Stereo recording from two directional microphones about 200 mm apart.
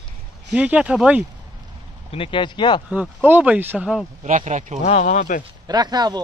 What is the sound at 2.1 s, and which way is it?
Speech, 25° left (ahead or behind).